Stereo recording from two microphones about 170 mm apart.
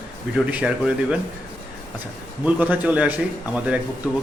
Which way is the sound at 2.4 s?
10° right (ahead or behind).